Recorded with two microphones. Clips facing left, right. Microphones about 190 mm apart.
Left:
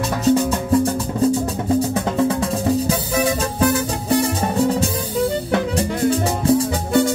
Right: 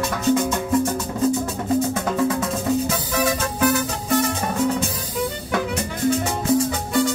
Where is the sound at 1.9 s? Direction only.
30° left (ahead or behind).